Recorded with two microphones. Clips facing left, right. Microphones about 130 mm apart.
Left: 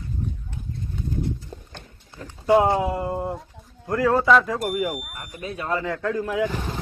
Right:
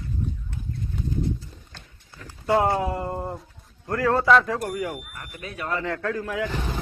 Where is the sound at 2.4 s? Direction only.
20° left (ahead or behind).